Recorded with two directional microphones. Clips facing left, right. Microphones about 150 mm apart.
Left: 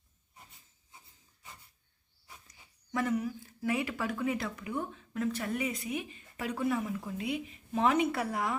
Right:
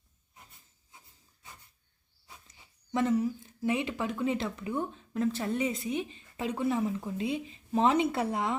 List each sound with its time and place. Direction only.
2.2 s speech: 25° right (ahead or behind)